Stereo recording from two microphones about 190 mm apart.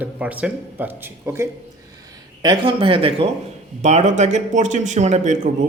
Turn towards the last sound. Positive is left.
turn(degrees=-40)  # may be behind; listen again after turning